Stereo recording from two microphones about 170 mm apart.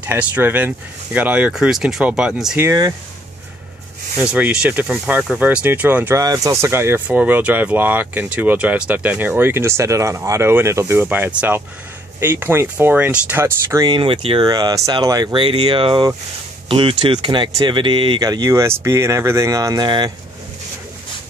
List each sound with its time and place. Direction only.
0.0 s speech: 10° right (ahead or behind)
2.6 s speech: 20° right (ahead or behind)
4.2 s speech: 5° right (ahead or behind)
13.8 s speech: 30° right (ahead or behind)